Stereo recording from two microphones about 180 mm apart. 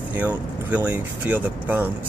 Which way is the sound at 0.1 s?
10° right (ahead or behind).